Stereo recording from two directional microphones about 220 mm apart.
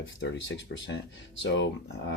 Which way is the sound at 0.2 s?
55° left (ahead or behind).